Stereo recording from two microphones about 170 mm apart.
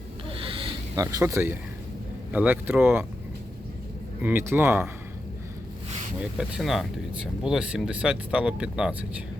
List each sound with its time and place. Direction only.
0.3 s a sound: 30° right (ahead or behind)
0.9 s speech: 20° right (ahead or behind)
4.2 s speech: 15° right (ahead or behind)
6.3 s speech: centre (ahead or behind)